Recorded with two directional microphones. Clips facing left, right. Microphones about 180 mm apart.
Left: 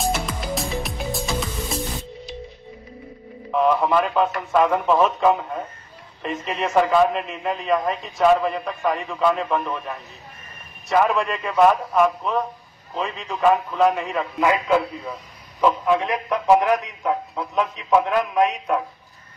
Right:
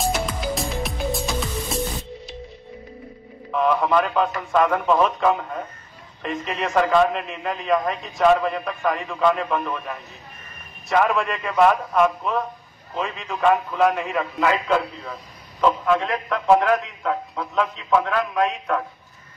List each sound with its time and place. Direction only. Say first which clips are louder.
0.0 s music: right 1 dB; centre (ahead or behind)
3.5 s a man's voice: left 1 dB; centre (ahead or behind)
14.4 s a man's voice: left 2 dB; 10° left (ahead or behind)